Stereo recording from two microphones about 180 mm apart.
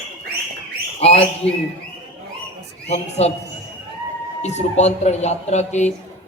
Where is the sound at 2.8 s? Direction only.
35° left (ahead or behind).